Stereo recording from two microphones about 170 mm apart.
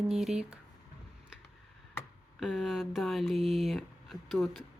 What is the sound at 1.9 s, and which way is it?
Tick-tock, 15° left (ahead or behind).